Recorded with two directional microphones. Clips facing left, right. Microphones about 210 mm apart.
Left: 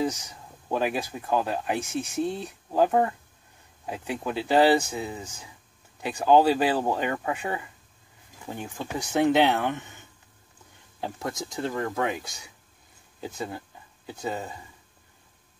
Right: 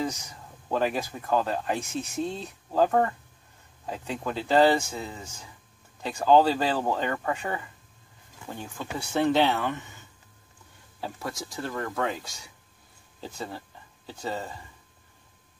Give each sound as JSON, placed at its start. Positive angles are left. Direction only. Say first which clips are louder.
{"t": 0.7, "sound": "speech", "louder": "even", "side_deg": 15}
{"t": 11.0, "sound": "speech", "louder": "left 3 dB", "side_deg": 20}
{"t": 13.2, "sound": "speech", "louder": "left 3 dB", "side_deg": 15}